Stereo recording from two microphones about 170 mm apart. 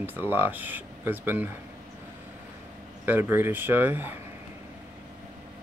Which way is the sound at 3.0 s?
10° right (ahead or behind).